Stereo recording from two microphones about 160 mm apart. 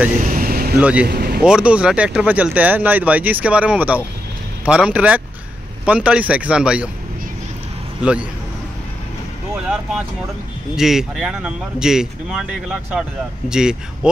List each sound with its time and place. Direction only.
0.2 s vehicle: 60° right (ahead or behind)
0.7 s speech: 10° right (ahead or behind)
1.0 s speech: 75° right (ahead or behind)
1.4 s speech: 5° right (ahead or behind)
8.0 s speech: 5° right (ahead or behind)
10.8 s speech: 5° right (ahead or behind)